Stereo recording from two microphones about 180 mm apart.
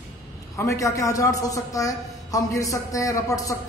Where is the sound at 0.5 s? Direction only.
15° left (ahead or behind).